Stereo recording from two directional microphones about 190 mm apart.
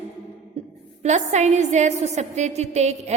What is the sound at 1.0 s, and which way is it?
A woman's voice, 35° right (ahead or behind).